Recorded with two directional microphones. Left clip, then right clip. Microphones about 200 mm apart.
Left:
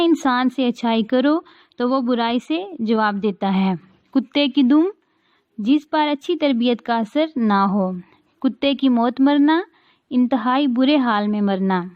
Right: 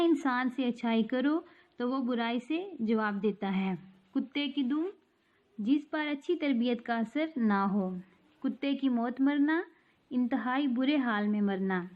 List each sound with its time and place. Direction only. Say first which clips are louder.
0.0 s a woman's voice: left 11 dB; 40° left (ahead or behind)